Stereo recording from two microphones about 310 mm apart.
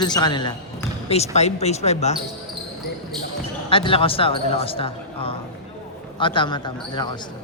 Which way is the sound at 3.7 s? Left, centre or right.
Centre.